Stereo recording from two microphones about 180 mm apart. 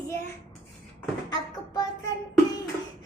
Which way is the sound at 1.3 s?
20° left (ahead or behind).